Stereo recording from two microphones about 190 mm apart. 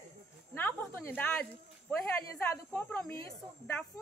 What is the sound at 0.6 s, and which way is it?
A woman's voice, 10° left (ahead or behind).